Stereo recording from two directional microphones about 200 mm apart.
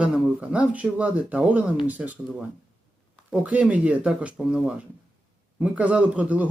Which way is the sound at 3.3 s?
5° right (ahead or behind).